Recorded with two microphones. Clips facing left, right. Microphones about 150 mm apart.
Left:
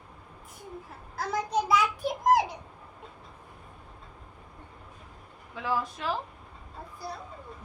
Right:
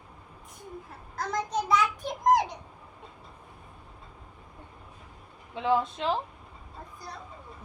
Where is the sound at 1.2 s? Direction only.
10° left (ahead or behind).